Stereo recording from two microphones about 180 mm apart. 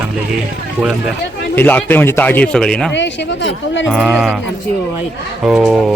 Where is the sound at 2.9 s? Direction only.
80° left.